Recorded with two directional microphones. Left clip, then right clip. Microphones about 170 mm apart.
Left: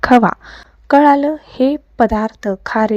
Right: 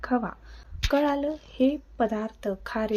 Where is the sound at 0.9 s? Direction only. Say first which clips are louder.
Left 15 dB; 45° left (ahead or behind).